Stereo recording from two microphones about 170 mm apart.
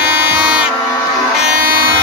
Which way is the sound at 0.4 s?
5° right (ahead or behind).